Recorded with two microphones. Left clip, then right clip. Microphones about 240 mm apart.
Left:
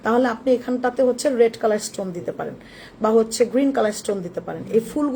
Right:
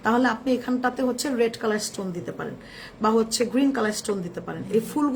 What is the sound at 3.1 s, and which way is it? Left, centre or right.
Speech, centre.